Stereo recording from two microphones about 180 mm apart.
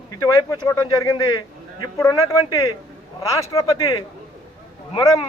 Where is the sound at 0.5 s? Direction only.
20° left (ahead or behind).